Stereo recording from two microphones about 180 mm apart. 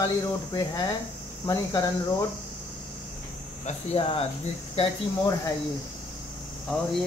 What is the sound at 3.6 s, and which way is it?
Speech, 30° left (ahead or behind).